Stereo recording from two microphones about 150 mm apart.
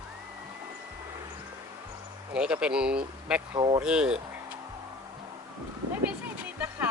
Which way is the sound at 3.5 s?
30° right (ahead or behind).